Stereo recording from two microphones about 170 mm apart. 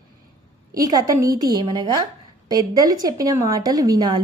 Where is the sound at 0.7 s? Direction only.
20° right (ahead or behind).